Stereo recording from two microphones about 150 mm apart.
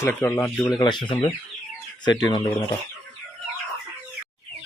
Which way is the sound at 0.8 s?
30° left (ahead or behind).